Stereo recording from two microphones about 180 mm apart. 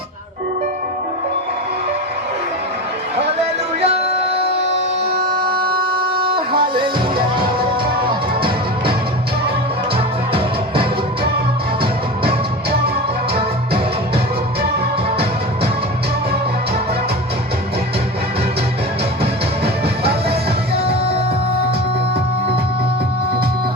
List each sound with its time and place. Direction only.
3.8 s music: 35° right (ahead or behind)
5.5 s a sound: 55° right (ahead or behind)
8.0 s music: 30° right (ahead or behind)